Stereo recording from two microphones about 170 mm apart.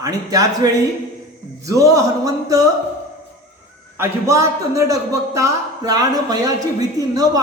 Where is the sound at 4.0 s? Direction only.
15° right (ahead or behind).